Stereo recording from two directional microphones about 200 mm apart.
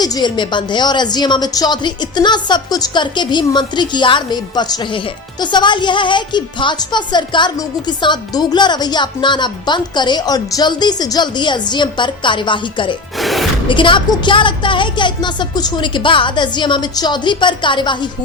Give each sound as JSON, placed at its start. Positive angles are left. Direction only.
{"t": 0.0, "sound": "speech", "side_deg": 20}
{"t": 13.1, "sound": "music", "side_deg": 0}
{"t": 13.7, "sound": "speech", "side_deg": 25}